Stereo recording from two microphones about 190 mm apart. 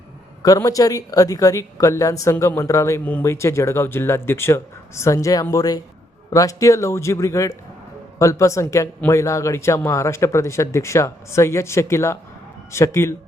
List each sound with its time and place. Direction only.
0.4 s speech: 20° left (ahead or behind)